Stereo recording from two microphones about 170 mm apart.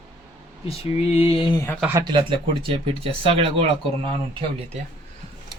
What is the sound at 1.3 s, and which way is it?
Speech, 30° left (ahead or behind).